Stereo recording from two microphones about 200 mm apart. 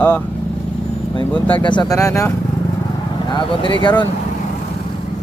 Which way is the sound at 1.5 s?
25° left (ahead or behind).